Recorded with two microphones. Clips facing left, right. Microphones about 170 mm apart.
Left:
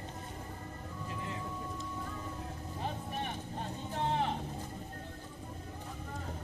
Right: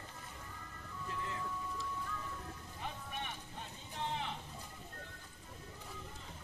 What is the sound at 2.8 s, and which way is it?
Vehicle, 40° left (ahead or behind).